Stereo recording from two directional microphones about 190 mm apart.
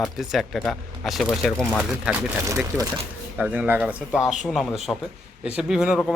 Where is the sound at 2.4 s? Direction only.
15° right (ahead or behind).